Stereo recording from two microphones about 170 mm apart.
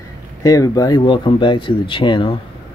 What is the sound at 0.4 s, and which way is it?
Speech, 20° left (ahead or behind).